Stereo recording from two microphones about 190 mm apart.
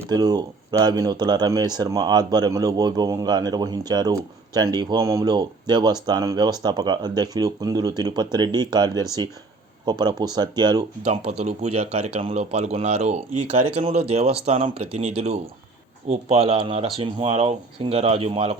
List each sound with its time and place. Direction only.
0.0 s speech: 20° right (ahead or behind)